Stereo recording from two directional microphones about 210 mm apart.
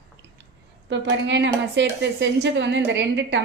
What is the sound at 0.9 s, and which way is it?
A woman's voice, 55° right (ahead or behind).